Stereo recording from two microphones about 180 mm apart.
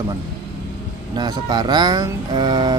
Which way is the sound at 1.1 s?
25° right (ahead or behind).